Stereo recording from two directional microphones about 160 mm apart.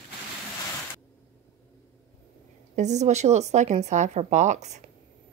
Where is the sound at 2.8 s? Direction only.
45° right (ahead or behind).